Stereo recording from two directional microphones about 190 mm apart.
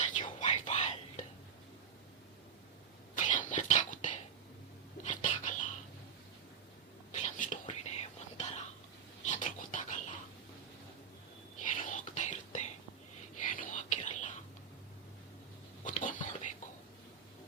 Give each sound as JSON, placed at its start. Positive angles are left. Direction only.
{"t": 0.0, "sound": "whispering", "side_deg": 40}
{"t": 3.2, "sound": "a sound", "side_deg": 40}
{"t": 5.0, "sound": "whispering", "side_deg": 40}
{"t": 7.2, "sound": "whispering", "side_deg": 40}
{"t": 9.2, "sound": "filing", "side_deg": 40}
{"t": 11.6, "sound": "whispering", "side_deg": 40}
{"t": 15.8, "sound": "whispering", "side_deg": 40}